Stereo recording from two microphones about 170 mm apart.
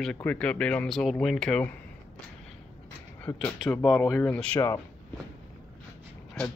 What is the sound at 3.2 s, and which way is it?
Speech, 10° left (ahead or behind).